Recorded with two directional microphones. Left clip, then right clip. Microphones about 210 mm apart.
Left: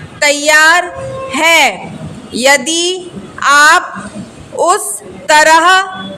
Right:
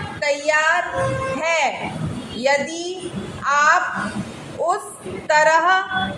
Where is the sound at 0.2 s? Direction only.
40° left (ahead or behind).